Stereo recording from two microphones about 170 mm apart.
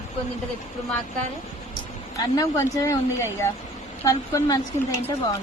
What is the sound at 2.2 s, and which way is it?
Speech, 20° left (ahead or behind).